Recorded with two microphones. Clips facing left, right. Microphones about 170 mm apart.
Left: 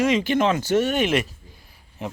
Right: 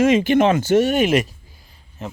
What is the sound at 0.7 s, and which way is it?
Speech, 10° right (ahead or behind).